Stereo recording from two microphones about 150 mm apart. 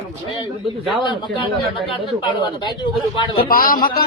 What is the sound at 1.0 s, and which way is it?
Speech, 30° left (ahead or behind).